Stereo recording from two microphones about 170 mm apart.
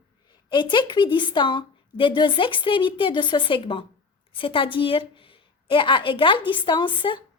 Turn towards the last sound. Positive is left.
turn(degrees=30)  # may be behind; listen again after turning